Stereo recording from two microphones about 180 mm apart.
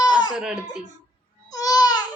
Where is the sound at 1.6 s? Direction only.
20° left (ahead or behind).